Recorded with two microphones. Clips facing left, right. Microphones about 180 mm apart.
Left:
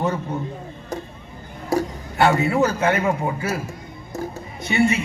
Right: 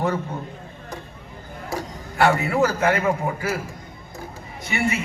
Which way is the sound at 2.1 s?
25° left (ahead or behind).